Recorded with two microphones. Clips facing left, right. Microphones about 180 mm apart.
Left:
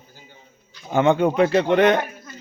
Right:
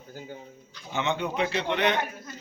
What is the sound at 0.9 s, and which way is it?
Speech, 50° left (ahead or behind).